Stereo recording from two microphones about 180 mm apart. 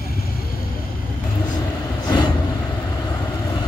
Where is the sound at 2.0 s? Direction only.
25° left (ahead or behind).